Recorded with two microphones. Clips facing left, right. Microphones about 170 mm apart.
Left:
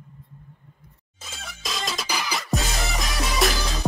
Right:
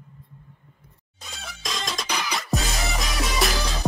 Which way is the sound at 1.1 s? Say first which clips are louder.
Even; centre (ahead or behind).